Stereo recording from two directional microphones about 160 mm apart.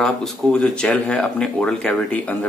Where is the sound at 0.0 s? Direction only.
5° left (ahead or behind).